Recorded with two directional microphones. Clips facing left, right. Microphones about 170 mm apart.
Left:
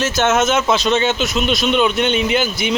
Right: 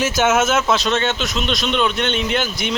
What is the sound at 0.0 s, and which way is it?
Speech, 10° right (ahead or behind).